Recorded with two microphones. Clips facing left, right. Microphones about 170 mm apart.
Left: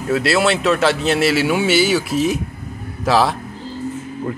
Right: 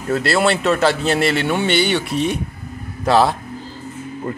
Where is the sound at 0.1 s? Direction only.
Centre (ahead or behind).